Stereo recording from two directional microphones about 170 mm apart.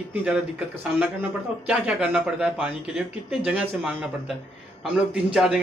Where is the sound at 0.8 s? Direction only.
5° right (ahead or behind).